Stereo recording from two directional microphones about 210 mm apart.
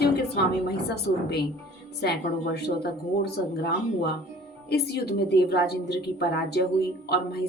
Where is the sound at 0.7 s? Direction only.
50° left (ahead or behind).